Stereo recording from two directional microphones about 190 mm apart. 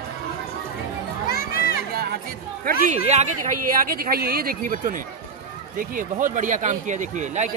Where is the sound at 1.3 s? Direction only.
50° left (ahead or behind).